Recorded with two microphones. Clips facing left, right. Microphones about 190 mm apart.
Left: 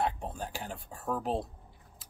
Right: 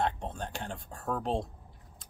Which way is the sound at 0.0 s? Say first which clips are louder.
Even; 5° left (ahead or behind).